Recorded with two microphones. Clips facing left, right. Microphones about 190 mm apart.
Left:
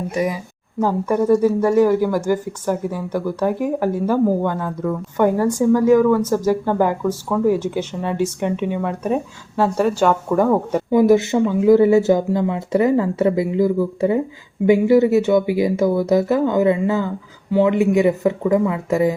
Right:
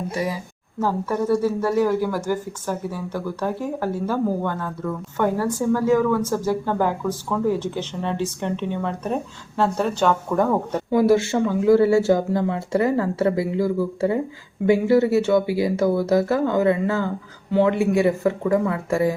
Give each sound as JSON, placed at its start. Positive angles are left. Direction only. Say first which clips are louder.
{"t": 0.1, "sound": "speech", "louder": "left 4 dB", "side_deg": 20}